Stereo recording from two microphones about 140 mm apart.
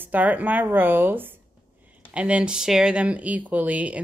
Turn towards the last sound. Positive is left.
turn(degrees=-10)  # may be behind; listen again after turning